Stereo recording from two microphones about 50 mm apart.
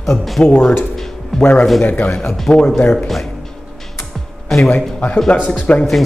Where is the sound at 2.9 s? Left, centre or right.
Centre.